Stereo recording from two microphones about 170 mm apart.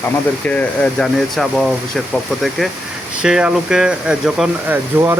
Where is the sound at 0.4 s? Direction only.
5° left (ahead or behind).